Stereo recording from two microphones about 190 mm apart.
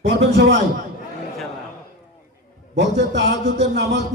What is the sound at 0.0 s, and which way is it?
Speech, 70° right (ahead or behind).